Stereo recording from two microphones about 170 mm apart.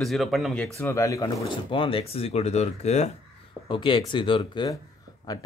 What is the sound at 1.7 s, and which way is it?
Speech, 30° left (ahead or behind).